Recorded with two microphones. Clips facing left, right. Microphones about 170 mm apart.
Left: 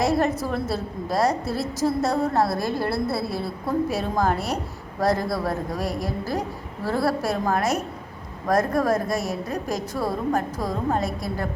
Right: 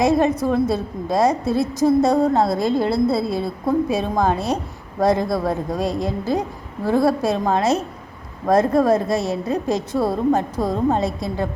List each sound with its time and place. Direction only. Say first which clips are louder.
0.0 s a woman's voice: right 5 dB; 20° right (ahead or behind)